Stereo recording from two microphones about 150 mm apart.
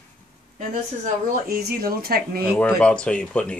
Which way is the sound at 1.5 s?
90° right.